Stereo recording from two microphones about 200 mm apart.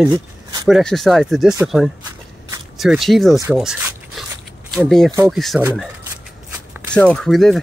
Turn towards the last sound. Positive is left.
turn(degrees=0)  # may be behind; listen again after turning